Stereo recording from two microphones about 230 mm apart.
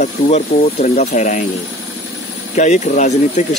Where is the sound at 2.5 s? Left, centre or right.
Left.